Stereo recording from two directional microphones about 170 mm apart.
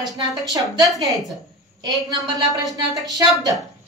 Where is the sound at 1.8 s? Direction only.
25° right (ahead or behind).